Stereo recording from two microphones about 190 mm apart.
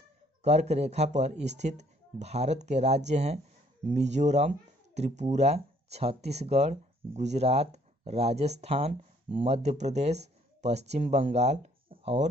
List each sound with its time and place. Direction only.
0.4 s speech: 35° right (ahead or behind)